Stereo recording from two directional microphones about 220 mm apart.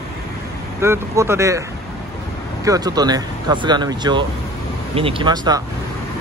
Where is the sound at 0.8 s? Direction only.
10° right (ahead or behind).